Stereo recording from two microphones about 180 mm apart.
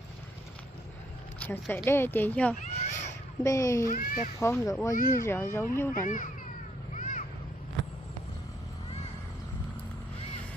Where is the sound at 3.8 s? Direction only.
50° left (ahead or behind).